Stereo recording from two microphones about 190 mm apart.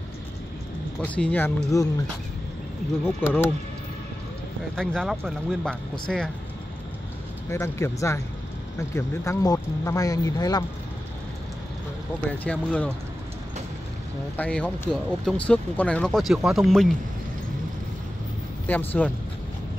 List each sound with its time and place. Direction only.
1.0 s speech: 5° left (ahead or behind)
3.0 s speech: 10° left (ahead or behind)
4.7 s speech: centre (ahead or behind)
7.4 s speech: 15° left (ahead or behind)
12.4 s speech: 5° left (ahead or behind)
14.3 s speech: 5° left (ahead or behind)
18.7 s speech: 10° left (ahead or behind)